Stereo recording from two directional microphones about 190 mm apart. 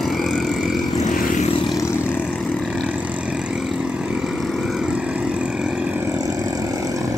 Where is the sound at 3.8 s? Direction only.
Centre (ahead or behind).